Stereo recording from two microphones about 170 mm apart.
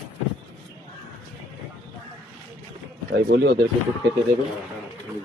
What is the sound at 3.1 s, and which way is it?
Speech, 65° right (ahead or behind).